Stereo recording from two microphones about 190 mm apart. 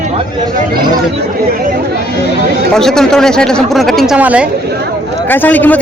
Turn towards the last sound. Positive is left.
turn(degrees=10)  # may be behind; listen again after turning